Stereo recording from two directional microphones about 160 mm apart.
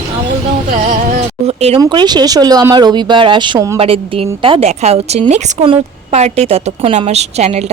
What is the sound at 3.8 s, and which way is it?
A woman's voice, 35° right (ahead or behind).